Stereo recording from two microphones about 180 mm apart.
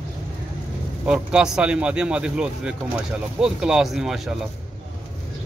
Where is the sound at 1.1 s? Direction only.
5° right (ahead or behind).